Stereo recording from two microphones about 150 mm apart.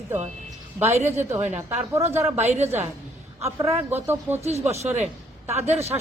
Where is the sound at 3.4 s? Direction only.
20° right (ahead or behind).